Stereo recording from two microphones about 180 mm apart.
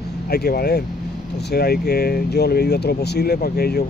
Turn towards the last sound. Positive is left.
turn(degrees=60)  # may be behind; listen again after turning